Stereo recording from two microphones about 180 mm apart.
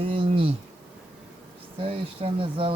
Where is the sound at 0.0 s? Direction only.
30° right (ahead or behind).